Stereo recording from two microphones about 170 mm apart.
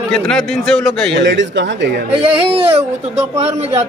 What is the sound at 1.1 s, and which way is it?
Speech, 90° right.